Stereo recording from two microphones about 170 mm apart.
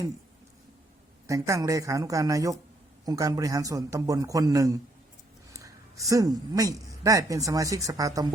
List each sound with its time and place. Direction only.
1.3 s a man's voice: 20° right (ahead or behind)